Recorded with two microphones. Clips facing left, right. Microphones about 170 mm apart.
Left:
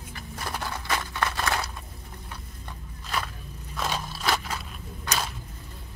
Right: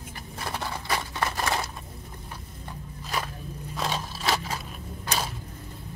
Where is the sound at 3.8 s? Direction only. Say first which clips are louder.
Even; centre (ahead or behind).